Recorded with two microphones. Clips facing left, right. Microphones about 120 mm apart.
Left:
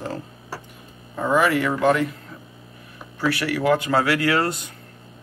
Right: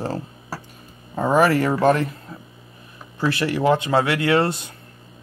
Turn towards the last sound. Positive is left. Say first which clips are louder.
# right 2 dB
turn(degrees=-25)  # may be behind; listen again after turning